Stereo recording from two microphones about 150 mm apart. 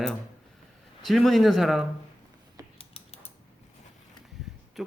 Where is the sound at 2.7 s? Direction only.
40° left (ahead or behind).